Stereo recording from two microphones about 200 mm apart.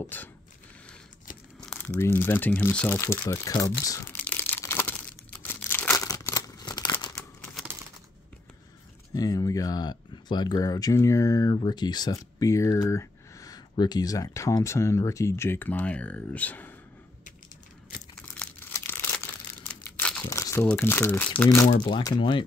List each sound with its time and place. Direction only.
0.0 s a sound: 10° left (ahead or behind)
1.6 s crumpling: 5° left (ahead or behind)
9.1 s speech: 20° left (ahead or behind)
18.3 s tearing: 10° left (ahead or behind)
19.8 s crumpling: 5° left (ahead or behind)
21.8 s speech: 25° left (ahead or behind)